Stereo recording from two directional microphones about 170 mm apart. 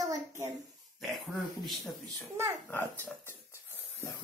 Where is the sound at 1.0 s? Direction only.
Centre (ahead or behind).